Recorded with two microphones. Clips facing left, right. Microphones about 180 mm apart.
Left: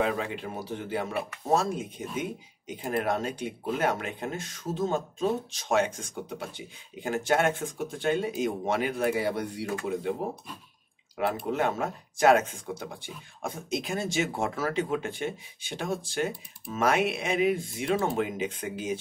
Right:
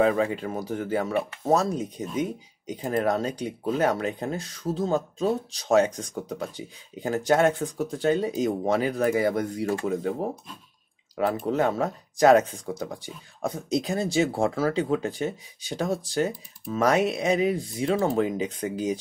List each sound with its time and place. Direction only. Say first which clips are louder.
0.0 s speech: right 6 dB; 45° right (ahead or behind)
11.1 s speech: right 4 dB; 40° right (ahead or behind)